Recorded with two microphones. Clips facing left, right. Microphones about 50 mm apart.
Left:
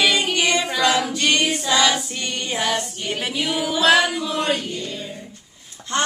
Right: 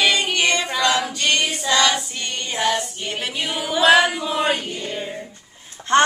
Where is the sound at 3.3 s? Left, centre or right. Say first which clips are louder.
Left 4 dB; centre.